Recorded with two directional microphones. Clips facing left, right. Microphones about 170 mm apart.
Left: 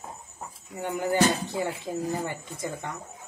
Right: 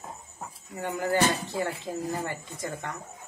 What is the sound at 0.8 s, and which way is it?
Speech, 15° left (ahead or behind).